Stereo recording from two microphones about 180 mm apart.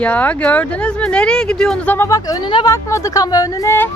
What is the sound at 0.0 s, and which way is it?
Speech, 10° left (ahead or behind).